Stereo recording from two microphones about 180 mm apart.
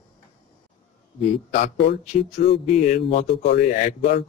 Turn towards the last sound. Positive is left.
turn(degrees=40)  # may be behind; listen again after turning